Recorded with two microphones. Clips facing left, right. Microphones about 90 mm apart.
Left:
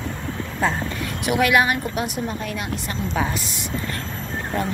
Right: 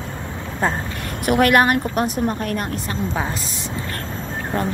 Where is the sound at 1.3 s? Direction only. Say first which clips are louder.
Right 3 dB; 45° right (ahead or behind).